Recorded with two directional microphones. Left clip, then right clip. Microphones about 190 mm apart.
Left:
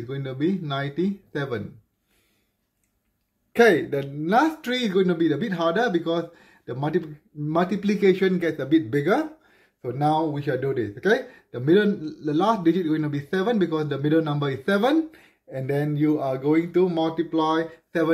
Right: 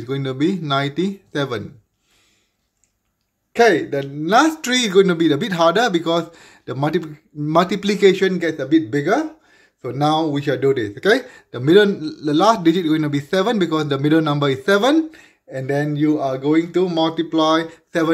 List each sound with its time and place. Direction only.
0.0 s speech: 30° right (ahead or behind)
3.5 s speech: 5° left (ahead or behind)
4.2 s speech: 15° right (ahead or behind)
4.6 s a man's voice: 30° right (ahead or behind); by 9.6 s centre (ahead or behind)
9.8 s speech: 25° right (ahead or behind)